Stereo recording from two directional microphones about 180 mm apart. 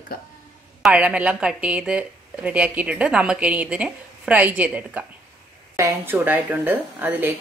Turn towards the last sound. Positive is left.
turn(degrees=-10)  # may be behind; listen again after turning